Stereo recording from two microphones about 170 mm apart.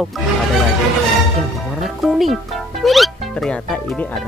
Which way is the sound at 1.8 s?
Centre (ahead or behind).